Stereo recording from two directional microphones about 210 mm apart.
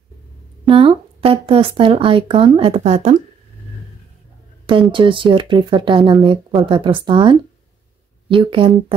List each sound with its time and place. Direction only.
0.7 s speech: 25° right (ahead or behind)
4.9 s speech: 25° right (ahead or behind)